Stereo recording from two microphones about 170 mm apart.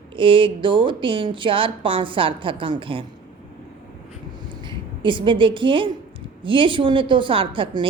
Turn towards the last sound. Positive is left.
turn(degrees=-30)  # may be behind; listen again after turning